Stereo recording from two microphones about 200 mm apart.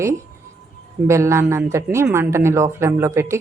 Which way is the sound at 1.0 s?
15° right (ahead or behind).